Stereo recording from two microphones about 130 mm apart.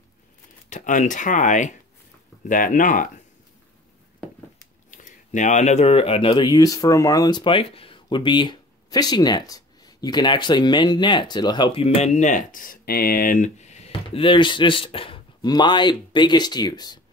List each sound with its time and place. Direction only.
0.7 s speech: 80° left
2.4 s speech: 90° left
4.9 s speech: 75° left (ahead or behind); by 12.7 s 90° left
13.2 s a sound: 80° left; by 13.9 s 60° left (ahead or behind)
14.0 s speech: 40° left (ahead or behind)